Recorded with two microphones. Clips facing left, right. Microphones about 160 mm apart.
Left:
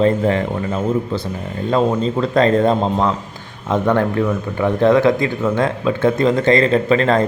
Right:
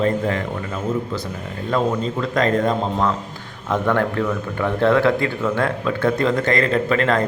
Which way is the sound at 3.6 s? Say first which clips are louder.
Left 3 dB; 20° left (ahead or behind).